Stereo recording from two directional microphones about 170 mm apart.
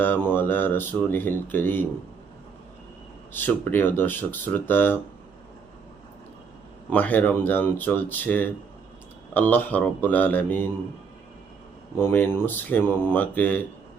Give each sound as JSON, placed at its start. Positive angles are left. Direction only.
{"t": 0.0, "sound": "speech", "side_deg": 10}
{"t": 3.3, "sound": "speech", "side_deg": 10}
{"t": 6.9, "sound": "speech", "side_deg": 10}
{"t": 11.9, "sound": "speech", "side_deg": 15}